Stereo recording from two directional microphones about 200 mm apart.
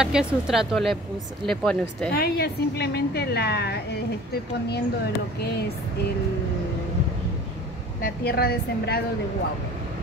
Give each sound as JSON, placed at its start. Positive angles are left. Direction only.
{"t": 0.0, "sound": "speech", "side_deg": -5}
{"t": 2.1, "sound": "a woman's voice", "side_deg": 50}
{"t": 8.0, "sound": "a woman's voice", "side_deg": 50}